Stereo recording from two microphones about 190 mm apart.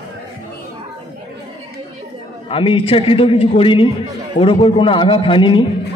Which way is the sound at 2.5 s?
30° left (ahead or behind).